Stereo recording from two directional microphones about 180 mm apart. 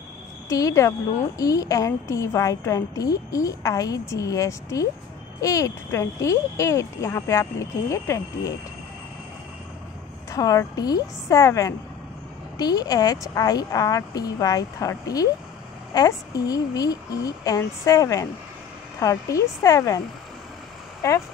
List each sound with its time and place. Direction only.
0.5 s a woman's voice: 20° left (ahead or behind)
10.3 s a woman's voice: 20° left (ahead or behind)
21.0 s speech: 15° left (ahead or behind)